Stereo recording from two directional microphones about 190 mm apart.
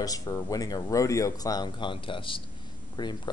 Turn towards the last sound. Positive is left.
turn(degrees=20)  # may be behind; listen again after turning